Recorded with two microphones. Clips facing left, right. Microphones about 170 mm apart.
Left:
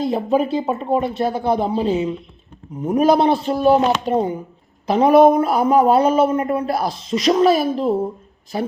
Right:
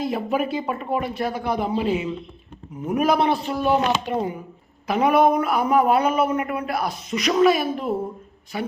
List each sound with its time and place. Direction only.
0.0 s a man's voice: 25° left (ahead or behind)
4.1 s a man's voice: 25° left (ahead or behind)